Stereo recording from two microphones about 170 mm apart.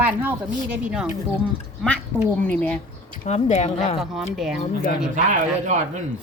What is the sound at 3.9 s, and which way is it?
Speech, centre (ahead or behind).